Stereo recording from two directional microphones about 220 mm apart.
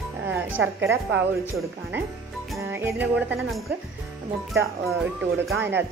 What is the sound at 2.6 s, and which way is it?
Speech, 10° right (ahead or behind).